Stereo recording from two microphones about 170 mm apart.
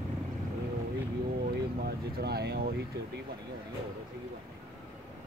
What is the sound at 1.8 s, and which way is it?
Speech, 70° right (ahead or behind).